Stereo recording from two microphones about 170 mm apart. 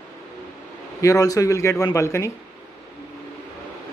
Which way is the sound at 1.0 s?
20° left (ahead or behind).